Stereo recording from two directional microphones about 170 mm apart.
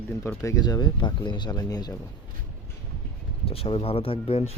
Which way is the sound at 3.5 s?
35° left (ahead or behind).